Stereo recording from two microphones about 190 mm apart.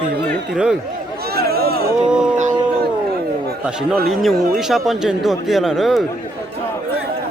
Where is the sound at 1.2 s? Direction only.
55° right (ahead or behind).